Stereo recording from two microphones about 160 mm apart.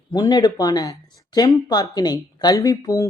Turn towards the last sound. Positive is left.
turn(degrees=20)  # may be behind; listen again after turning